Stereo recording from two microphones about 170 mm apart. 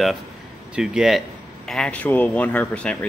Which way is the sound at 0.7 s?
5° right (ahead or behind).